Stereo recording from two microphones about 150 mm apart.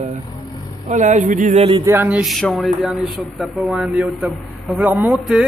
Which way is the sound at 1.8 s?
15° right (ahead or behind).